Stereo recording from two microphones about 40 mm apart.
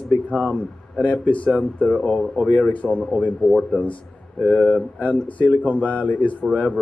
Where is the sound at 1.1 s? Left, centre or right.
Left.